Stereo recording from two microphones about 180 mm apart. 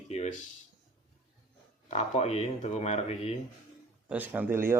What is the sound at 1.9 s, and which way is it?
Speech, 35° left (ahead or behind).